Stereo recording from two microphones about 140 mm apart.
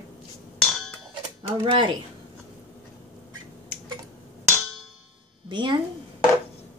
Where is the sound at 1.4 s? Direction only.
35° right (ahead or behind).